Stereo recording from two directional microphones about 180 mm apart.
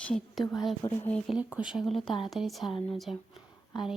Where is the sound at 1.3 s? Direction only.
5° right (ahead or behind).